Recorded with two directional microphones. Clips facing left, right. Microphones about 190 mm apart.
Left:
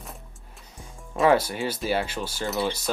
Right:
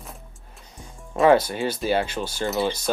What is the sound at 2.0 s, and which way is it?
Speech, 10° left (ahead or behind).